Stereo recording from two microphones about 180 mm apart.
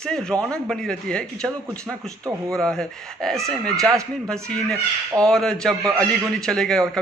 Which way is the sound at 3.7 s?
20° right (ahead or behind).